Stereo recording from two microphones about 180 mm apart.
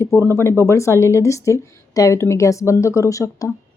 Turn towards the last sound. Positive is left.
turn(degrees=15)  # may be behind; listen again after turning